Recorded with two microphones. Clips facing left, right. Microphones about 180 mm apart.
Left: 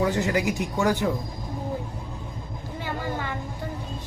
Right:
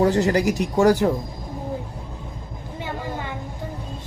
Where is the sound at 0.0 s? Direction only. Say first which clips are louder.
Right 5 dB; 40° right (ahead or behind).